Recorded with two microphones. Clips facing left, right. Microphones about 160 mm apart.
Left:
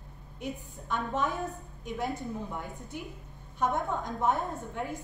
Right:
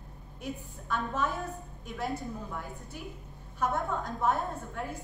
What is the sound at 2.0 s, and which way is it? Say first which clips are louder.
Speech: left 1 dB; 20° left (ahead or behind).